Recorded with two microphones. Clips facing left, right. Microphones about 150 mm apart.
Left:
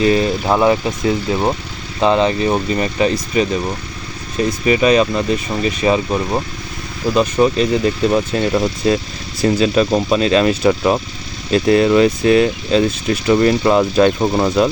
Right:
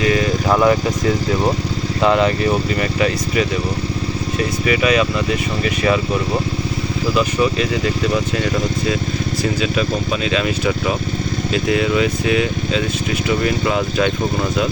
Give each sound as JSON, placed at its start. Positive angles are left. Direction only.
{"t": 0.0, "sound": "speech", "side_deg": 30}
{"t": 4.6, "sound": "speech", "side_deg": 30}
{"t": 7.1, "sound": "speech", "side_deg": 35}
{"t": 9.6, "sound": "speech", "side_deg": 35}